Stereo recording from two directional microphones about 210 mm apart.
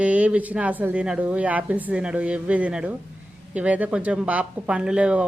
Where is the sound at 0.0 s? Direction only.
5° right (ahead or behind).